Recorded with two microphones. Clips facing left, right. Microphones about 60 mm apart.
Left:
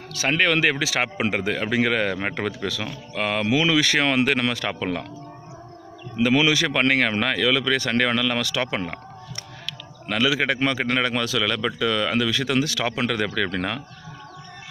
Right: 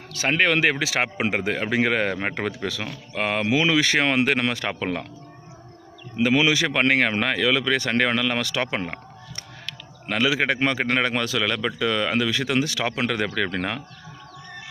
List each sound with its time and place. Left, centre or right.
0.1 s speech: right
6.1 s speech: centre
10.0 s a man's voice: right
11.4 s speech: centre